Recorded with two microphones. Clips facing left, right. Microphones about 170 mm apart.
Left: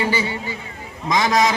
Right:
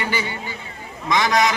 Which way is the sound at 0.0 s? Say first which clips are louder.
Left 4 dB; 35° left (ahead or behind).